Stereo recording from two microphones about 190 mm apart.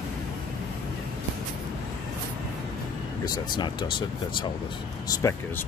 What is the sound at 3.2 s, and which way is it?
Speech, 20° left (ahead or behind).